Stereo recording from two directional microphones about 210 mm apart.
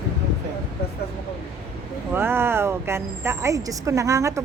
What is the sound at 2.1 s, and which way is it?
Speech, 10° right (ahead or behind).